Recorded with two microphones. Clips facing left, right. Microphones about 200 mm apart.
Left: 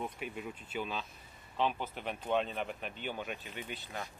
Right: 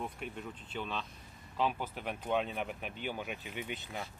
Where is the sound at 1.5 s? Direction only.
5° right (ahead or behind).